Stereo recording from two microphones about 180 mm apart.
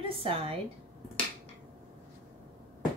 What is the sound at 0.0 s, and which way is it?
Speech, 30° right (ahead or behind).